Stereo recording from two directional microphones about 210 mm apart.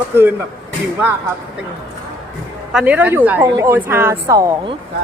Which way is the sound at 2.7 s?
5° right (ahead or behind).